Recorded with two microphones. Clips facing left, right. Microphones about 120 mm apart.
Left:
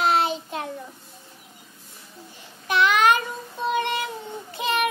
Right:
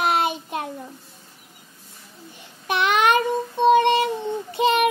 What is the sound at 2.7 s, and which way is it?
Child singing, 20° right (ahead or behind).